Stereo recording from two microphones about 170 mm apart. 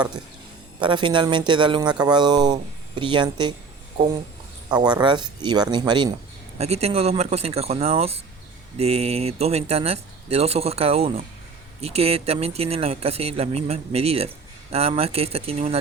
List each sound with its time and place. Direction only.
0.8 s speech: 25° right (ahead or behind)
4.7 s speech: 25° right (ahead or behind)
6.6 s speech: 40° right (ahead or behind)